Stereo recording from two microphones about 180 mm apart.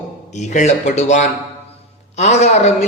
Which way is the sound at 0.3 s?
40° left (ahead or behind).